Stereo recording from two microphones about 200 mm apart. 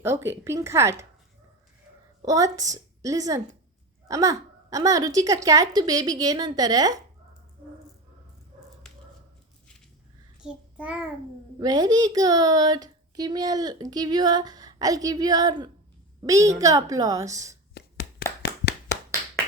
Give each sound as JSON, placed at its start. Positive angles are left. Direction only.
{"t": 0.0, "sound": "speech", "side_deg": -10}
{"t": 2.2, "sound": "a woman's voice", "side_deg": -15}
{"t": 10.4, "sound": "child singing", "side_deg": -5}
{"t": 11.6, "sound": "speech", "side_deg": -20}
{"t": 18.4, "sound": "clapping", "side_deg": 50}